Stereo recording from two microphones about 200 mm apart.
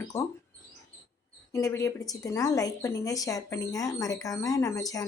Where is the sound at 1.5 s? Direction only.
15° left (ahead or behind).